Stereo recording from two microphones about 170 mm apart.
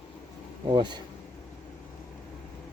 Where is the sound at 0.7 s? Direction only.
25° right (ahead or behind).